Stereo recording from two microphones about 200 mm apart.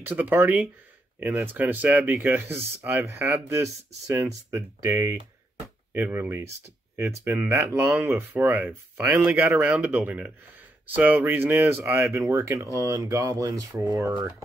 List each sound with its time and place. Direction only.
0.0 s speech: 10° right (ahead or behind)